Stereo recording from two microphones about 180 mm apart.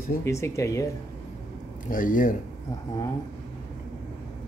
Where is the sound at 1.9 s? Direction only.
50° left (ahead or behind).